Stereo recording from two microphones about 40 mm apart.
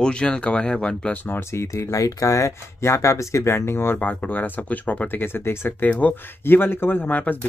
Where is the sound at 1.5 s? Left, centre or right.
Left.